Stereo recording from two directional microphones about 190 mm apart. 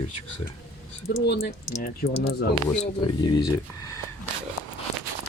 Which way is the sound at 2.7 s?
30° left (ahead or behind).